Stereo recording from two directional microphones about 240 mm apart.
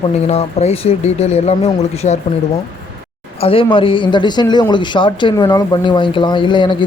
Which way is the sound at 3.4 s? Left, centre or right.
Left.